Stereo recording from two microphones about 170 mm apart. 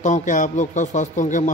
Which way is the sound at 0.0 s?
45° left (ahead or behind).